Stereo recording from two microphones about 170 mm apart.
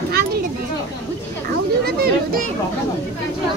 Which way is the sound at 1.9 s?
65° right (ahead or behind).